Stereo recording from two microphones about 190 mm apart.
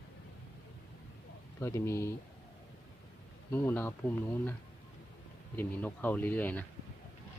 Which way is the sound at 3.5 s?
10° left (ahead or behind).